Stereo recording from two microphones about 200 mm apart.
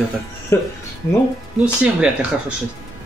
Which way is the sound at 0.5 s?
15° left (ahead or behind).